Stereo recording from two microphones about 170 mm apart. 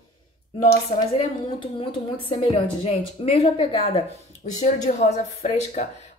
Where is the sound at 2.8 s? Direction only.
35° left (ahead or behind).